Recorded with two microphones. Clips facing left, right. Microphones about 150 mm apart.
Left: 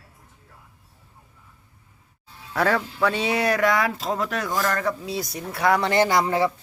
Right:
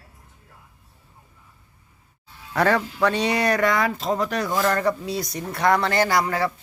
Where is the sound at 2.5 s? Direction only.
Centre (ahead or behind).